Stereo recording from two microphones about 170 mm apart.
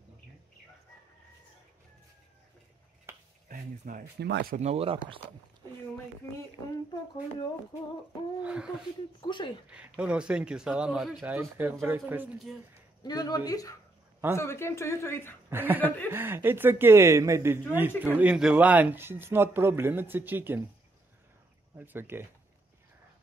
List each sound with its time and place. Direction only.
3.1 s finger snapping: 15° right (ahead or behind)
3.4 s speech: 55° right (ahead or behind)
4.2 s speech: 70° right (ahead or behind)
4.6 s speech: 40° right (ahead or behind)
8.4 s a man's voice: 5° right (ahead or behind)
9.2 s speech: 25° left (ahead or behind)
9.7 s speech: 5° right (ahead or behind)
11.3 s a man's voice: 10° right (ahead or behind)
13.0 s speech: 25° left (ahead or behind)
15.5 s a man's voice: 10° right (ahead or behind)
21.7 s a man's voice: 10° right (ahead or behind)